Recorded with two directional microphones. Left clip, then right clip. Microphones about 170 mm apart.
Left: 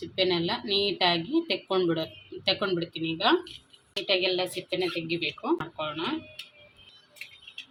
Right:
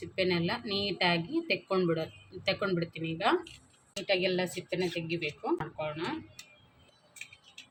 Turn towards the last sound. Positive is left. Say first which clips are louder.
# left 3 dB
turn(degrees=20)  # may be behind; listen again after turning